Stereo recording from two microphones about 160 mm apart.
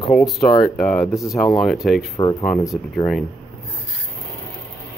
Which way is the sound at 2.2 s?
25° left (ahead or behind).